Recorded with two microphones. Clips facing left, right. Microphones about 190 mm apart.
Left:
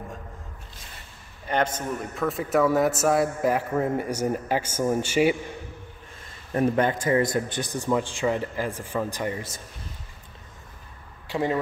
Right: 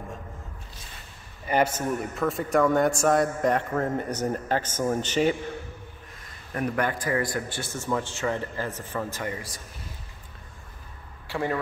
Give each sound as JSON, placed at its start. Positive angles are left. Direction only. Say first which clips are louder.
{"t": 1.5, "sound": "a man's voice", "louder": "right 2 dB", "side_deg": -10}
{"t": 6.5, "sound": "a man's voice", "louder": "left 5 dB", "side_deg": 25}
{"t": 11.2, "sound": "speech", "louder": "left 3 dB", "side_deg": 20}